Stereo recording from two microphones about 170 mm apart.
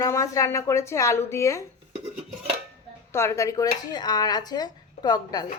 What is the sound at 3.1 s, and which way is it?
A woman's voice, 15° left (ahead or behind).